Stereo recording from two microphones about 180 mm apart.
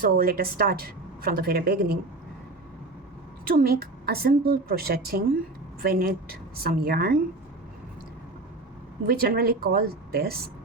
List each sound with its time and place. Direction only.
0.0 s a woman's voice: 55° right (ahead or behind)
3.4 s a woman's voice: 55° right (ahead or behind)
9.0 s a woman's voice: 55° right (ahead or behind)